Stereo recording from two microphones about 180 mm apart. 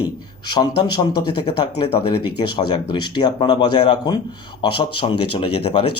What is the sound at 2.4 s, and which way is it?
A man's voice, 25° left (ahead or behind).